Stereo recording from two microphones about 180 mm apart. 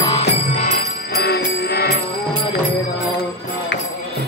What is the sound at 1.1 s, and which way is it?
Music, 60° left (ahead or behind).